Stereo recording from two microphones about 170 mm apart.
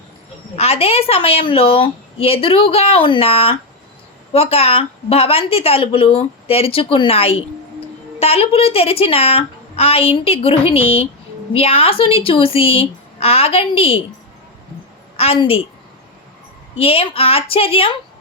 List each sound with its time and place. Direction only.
0.5 s a woman's voice: 35° left (ahead or behind)
15.1 s a woman's voice: 35° left (ahead or behind)
16.8 s a woman's voice: 35° left (ahead or behind)